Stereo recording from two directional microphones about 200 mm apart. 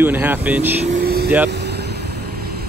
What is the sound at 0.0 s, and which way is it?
Speech, 10° right (ahead or behind).